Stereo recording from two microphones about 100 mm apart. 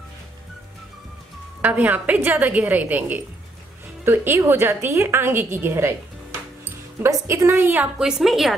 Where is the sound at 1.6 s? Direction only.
15° right (ahead or behind).